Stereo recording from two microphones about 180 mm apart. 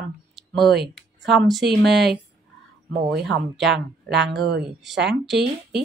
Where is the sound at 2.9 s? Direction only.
60° right (ahead or behind).